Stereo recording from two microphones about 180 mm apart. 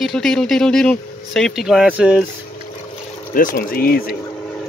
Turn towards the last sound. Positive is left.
turn(degrees=55)  # may be behind; listen again after turning